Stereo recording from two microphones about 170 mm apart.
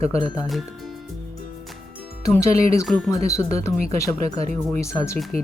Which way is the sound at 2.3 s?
20° left (ahead or behind).